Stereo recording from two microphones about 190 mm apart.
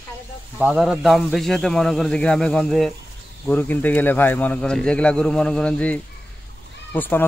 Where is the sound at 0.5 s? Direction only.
5° right (ahead or behind).